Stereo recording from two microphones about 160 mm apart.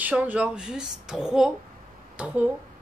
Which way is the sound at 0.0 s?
10° right (ahead or behind).